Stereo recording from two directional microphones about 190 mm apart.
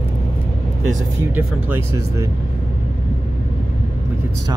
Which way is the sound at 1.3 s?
10° right (ahead or behind).